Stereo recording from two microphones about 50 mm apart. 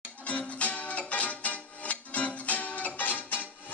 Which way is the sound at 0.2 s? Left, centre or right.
Left.